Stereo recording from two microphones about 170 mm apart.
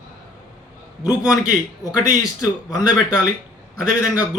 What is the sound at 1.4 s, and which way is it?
Speech, 20° left (ahead or behind).